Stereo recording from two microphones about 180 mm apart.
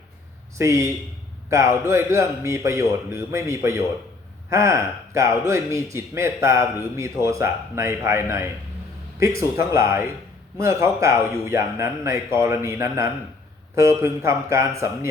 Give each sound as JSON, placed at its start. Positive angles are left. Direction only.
{"t": 0.6, "sound": "speech", "side_deg": -15}